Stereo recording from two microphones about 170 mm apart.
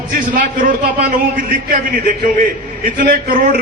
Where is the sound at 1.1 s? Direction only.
55° right (ahead or behind).